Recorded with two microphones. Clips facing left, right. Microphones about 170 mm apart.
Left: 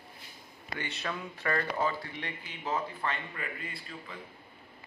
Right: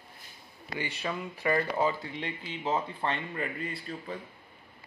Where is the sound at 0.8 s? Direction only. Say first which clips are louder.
Right 3 dB; 10° right (ahead or behind); by 4.2 s 35° right (ahead or behind).